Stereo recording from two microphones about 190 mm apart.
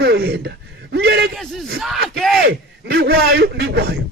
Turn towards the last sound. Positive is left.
turn(degrees=-55)  # may be behind; listen again after turning